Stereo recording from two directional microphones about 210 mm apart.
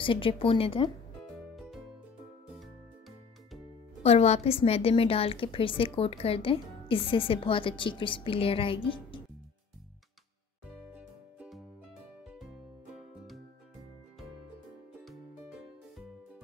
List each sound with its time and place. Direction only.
0.0 s a woman's voice: 25° left (ahead or behind)
1.5 s music: centre (ahead or behind)
4.0 s a woman's voice: 30° left (ahead or behind)
11.0 s music: 5° right (ahead or behind)